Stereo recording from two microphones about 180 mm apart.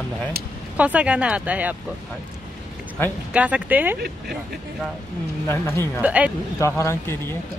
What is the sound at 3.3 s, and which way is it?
Speech, 5° right (ahead or behind).